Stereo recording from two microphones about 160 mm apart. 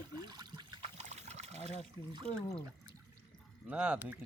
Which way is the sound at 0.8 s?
45° right (ahead or behind).